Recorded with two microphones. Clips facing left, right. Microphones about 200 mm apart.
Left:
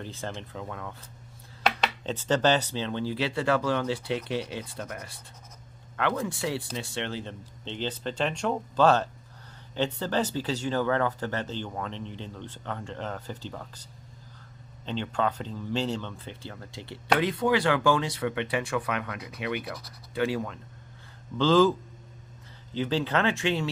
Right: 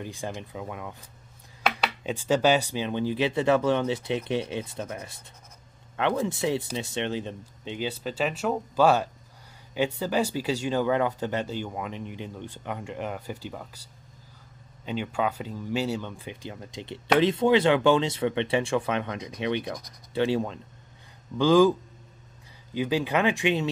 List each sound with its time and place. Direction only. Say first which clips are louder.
0.0 s speech: right 2 dB; 15° right (ahead or behind)
14.9 s speech: right 1 dB; 10° right (ahead or behind); by 20.6 s 25° right (ahead or behind)
21.4 s speech: right 2 dB; 15° right (ahead or behind)
22.8 s speech: right 2 dB; 10° right (ahead or behind)